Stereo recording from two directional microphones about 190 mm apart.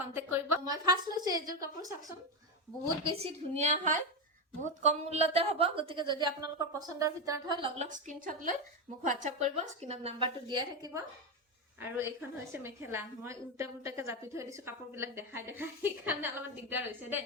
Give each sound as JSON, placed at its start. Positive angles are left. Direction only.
{"t": 0.0, "sound": "a woman's voice", "side_deg": -10}
{"t": 3.2, "sound": "a woman's voice", "side_deg": -40}
{"t": 7.8, "sound": "a woman's voice", "side_deg": -40}
{"t": 11.8, "sound": "a woman's voice", "side_deg": -10}